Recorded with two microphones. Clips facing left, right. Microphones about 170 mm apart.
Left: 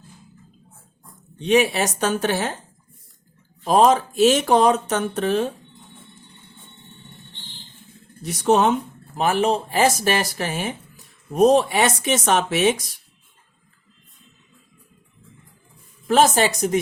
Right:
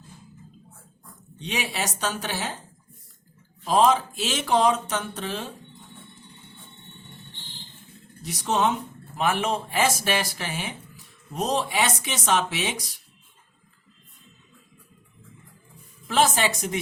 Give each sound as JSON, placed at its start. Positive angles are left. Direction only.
{"t": 1.5, "sound": "speech", "side_deg": 50}
{"t": 3.6, "sound": "speech", "side_deg": 50}
{"t": 8.2, "sound": "speech", "side_deg": 55}
{"t": 9.1, "sound": "speech", "side_deg": 35}
{"t": 11.3, "sound": "speech", "side_deg": 55}
{"t": 16.0, "sound": "a woman's voice", "side_deg": 45}